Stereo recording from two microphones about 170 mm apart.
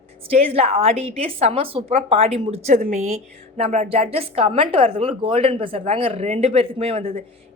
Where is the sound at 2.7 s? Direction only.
50° right (ahead or behind).